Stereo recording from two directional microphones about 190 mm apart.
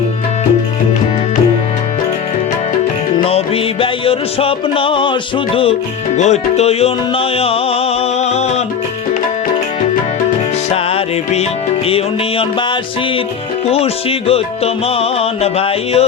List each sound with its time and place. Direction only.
3.2 s music: 30° left (ahead or behind)
6.1 s music: 35° left (ahead or behind)
10.7 s music: 35° left (ahead or behind)
13.7 s music: 30° left (ahead or behind)